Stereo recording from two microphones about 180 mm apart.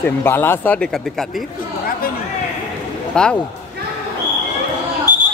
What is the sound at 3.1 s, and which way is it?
Speech, 5° left (ahead or behind).